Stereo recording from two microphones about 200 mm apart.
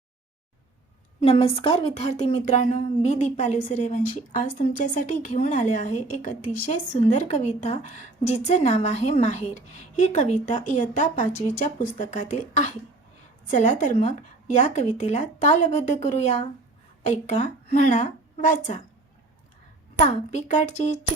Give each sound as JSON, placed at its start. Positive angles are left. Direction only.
{"t": 1.2, "sound": "a woman's voice", "side_deg": 30}
{"t": 20.0, "sound": "a woman's voice", "side_deg": 35}